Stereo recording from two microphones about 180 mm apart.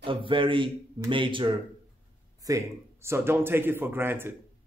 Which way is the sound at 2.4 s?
15° right (ahead or behind).